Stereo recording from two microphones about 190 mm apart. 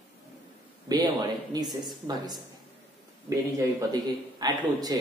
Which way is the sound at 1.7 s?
Centre (ahead or behind).